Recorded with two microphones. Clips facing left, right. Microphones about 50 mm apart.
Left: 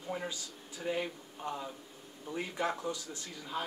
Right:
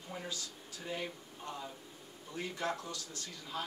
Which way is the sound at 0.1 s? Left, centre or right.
Left.